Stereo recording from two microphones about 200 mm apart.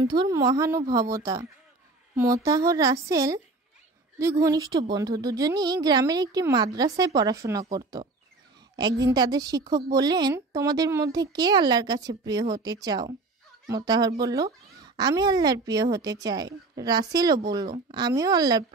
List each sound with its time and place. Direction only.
0.0 s a woman's voice: 20° right (ahead or behind)